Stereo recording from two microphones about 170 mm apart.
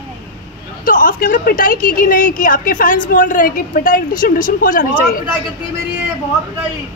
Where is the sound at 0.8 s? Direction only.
55° left (ahead or behind).